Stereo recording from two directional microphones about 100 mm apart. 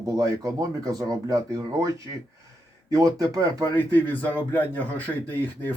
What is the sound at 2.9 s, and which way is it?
Speech, 35° right (ahead or behind).